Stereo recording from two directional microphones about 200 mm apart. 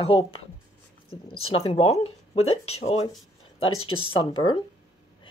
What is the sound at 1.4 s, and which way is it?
Speech, 30° left (ahead or behind).